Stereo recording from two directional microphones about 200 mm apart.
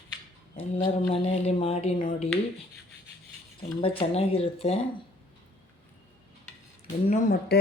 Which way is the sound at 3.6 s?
25° left (ahead or behind).